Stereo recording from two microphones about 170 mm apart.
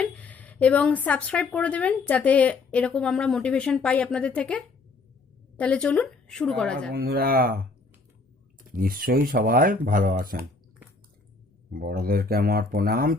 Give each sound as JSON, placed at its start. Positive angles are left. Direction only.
{"t": 0.0, "sound": "a sound", "side_deg": 10}
{"t": 1.5, "sound": "speech", "side_deg": 5}
{"t": 6.9, "sound": "speech", "side_deg": -65}
{"t": 8.7, "sound": "speech", "side_deg": -60}
{"t": 11.7, "sound": "speech", "side_deg": -60}